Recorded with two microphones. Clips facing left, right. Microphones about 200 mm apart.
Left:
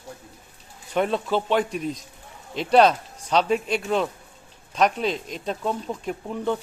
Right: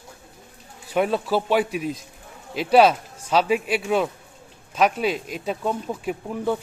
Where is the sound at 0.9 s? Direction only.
5° right (ahead or behind).